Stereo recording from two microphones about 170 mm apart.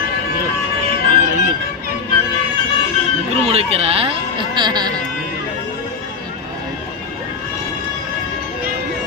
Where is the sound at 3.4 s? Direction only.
35° right (ahead or behind).